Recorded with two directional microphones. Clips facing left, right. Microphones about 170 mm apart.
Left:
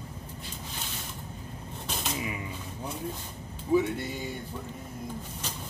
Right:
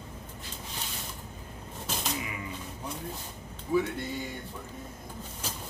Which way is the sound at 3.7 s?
25° left (ahead or behind).